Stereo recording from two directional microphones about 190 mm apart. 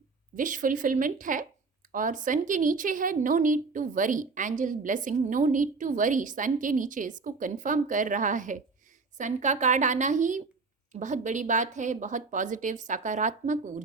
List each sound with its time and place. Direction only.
0.3 s a woman's voice: 45° right (ahead or behind)